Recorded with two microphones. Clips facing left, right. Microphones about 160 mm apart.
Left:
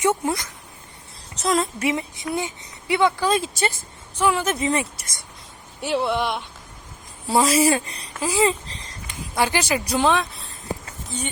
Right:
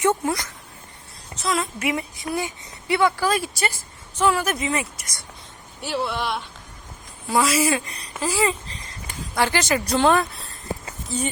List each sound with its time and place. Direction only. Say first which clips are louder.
0.0 s speech: even; 20° left (ahead or behind)
1.4 s a woman's voice: left 3 dB; 40° left (ahead or behind)
1.9 s speech: left 1 dB; 20° left (ahead or behind)
4.5 s a woman's voice: left 3 dB; 30° left (ahead or behind)
7.3 s a woman's voice: left 2 dB; 30° left (ahead or behind)
8.2 s speech: left 2 dB; 15° left (ahead or behind)
8.4 s speech: left 2 dB; 35° left (ahead or behind)
9.0 s speech: even; 15° left (ahead or behind)
10.1 s speech: right 2 dB; centre (ahead or behind)